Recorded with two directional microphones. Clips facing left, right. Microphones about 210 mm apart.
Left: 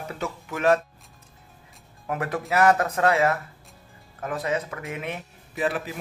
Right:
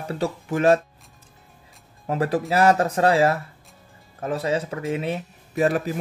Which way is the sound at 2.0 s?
30° right (ahead or behind).